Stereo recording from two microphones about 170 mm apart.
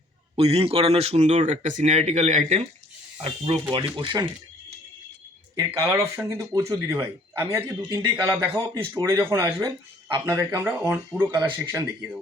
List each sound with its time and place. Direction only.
0.3 s speech: 35° right (ahead or behind)
3.5 s speech: 25° right (ahead or behind)
5.5 s speech: 15° right (ahead or behind)